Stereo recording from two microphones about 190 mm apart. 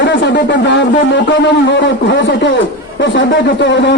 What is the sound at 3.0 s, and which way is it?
Speech, 70° left (ahead or behind).